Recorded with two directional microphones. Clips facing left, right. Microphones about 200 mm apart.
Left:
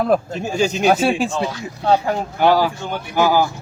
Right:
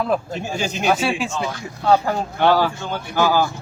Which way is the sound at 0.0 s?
45° left (ahead or behind).